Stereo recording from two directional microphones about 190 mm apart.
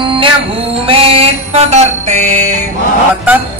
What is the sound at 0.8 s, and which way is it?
Mantra, 30° right (ahead or behind).